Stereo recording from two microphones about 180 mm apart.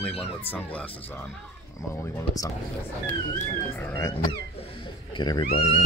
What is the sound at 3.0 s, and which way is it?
Speech, 10° left (ahead or behind).